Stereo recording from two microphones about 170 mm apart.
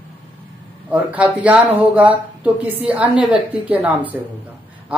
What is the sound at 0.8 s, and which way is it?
Speech, 5° right (ahead or behind).